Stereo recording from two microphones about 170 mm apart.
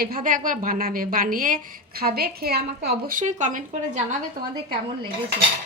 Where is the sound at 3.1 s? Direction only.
45° right (ahead or behind).